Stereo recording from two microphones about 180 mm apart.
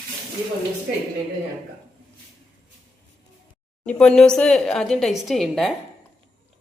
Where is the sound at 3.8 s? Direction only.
5° left (ahead or behind).